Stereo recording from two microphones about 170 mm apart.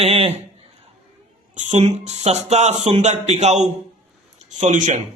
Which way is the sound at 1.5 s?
45° right (ahead or behind).